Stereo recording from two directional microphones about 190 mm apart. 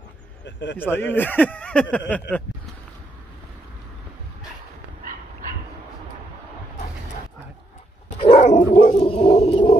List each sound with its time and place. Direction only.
0.5 s speech: 75° left (ahead or behind)
0.7 s speech: 10° left (ahead or behind)
8.2 s dog: 30° left (ahead or behind)
8.9 s a sound: 30° left (ahead or behind)